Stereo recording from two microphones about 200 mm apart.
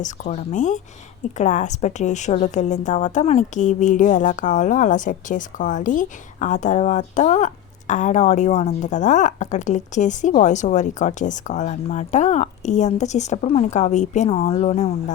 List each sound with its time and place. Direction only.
0.0 s a woman's voice: 35° left (ahead or behind)